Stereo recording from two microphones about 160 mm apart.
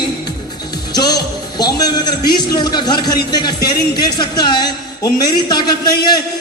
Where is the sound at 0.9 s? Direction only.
25° left (ahead or behind).